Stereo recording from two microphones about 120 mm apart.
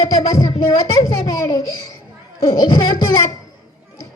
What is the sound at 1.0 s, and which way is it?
Speech, 30° left (ahead or behind).